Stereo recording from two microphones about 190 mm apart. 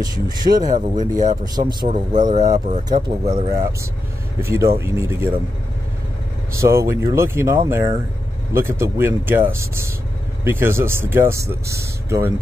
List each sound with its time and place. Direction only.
0.0 s speech: 20° right (ahead or behind)
0.7 s speech: 40° right (ahead or behind)
1.4 s speech: 20° right (ahead or behind)
1.9 s speech: 40° right (ahead or behind)
2.9 s speech: 25° right (ahead or behind)
6.5 s speech: 15° right (ahead or behind)